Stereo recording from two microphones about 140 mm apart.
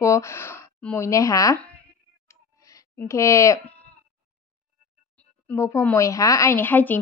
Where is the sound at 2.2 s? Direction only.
25° left (ahead or behind).